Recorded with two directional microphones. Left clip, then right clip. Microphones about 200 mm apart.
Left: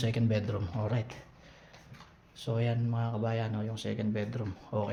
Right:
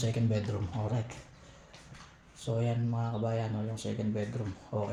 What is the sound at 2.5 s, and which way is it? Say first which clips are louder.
Speech: even; 5° right (ahead or behind).